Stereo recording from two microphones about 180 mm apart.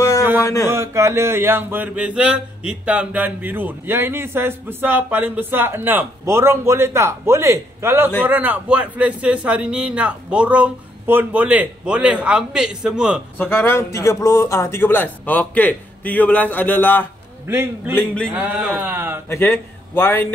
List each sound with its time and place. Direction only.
0.4 s a man's voice: 15° left (ahead or behind)
0.7 s mantra: 15° right (ahead or behind)
13.4 s a man's voice: 10° left (ahead or behind)
17.5 s mantra: 15° right (ahead or behind)
17.9 s a man's voice: 5° left (ahead or behind)
18.3 s mantra: 10° right (ahead or behind)
19.2 s a man's voice: 10° left (ahead or behind)